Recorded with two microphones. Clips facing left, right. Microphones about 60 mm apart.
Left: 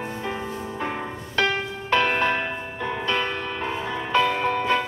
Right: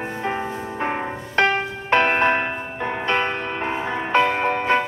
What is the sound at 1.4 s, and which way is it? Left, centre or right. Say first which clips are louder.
Music: right 4 dB; right.